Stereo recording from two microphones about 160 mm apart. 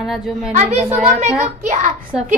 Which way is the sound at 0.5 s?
40° right (ahead or behind).